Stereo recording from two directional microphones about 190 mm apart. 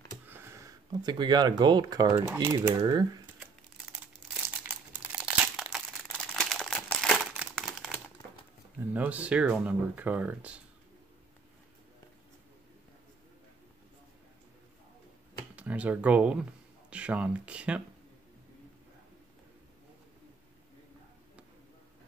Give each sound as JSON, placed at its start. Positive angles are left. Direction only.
{"t": 0.3, "sound": "speech", "side_deg": -15}
{"t": 4.6, "sound": "crumpling", "side_deg": -5}
{"t": 8.9, "sound": "speech", "side_deg": -10}
{"t": 15.5, "sound": "speech", "side_deg": -5}